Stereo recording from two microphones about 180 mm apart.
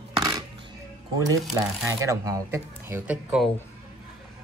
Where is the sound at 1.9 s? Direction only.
20° right (ahead or behind).